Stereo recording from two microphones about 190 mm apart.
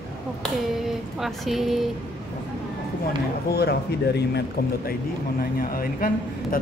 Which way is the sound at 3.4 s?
55° left (ahead or behind).